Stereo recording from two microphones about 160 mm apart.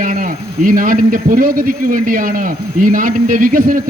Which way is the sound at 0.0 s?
60° right (ahead or behind).